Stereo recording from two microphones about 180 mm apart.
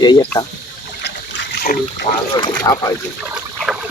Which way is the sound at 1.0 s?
70° left (ahead or behind).